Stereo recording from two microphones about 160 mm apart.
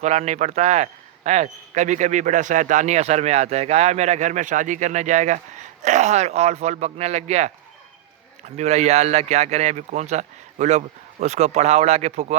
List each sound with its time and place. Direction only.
0.0 s speech: 45° right (ahead or behind)
8.5 s speech: 45° right (ahead or behind)